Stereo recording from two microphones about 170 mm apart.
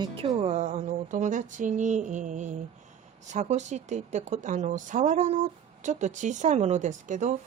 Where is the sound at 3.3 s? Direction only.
45° right (ahead or behind).